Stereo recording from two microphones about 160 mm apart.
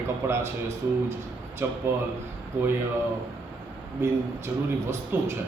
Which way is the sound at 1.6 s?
15° right (ahead or behind).